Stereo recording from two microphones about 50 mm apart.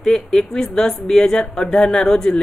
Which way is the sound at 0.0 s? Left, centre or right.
Centre.